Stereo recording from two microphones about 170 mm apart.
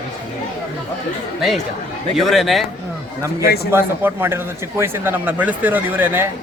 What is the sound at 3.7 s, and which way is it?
Speech, 15° right (ahead or behind).